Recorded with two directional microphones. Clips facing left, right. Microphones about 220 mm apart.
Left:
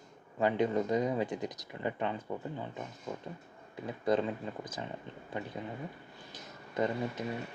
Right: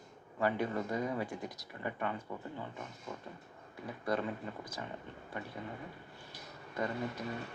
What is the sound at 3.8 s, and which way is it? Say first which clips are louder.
Speech: left 5 dB; 20° left (ahead or behind).